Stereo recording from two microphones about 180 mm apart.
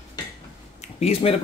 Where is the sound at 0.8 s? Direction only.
35° left (ahead or behind).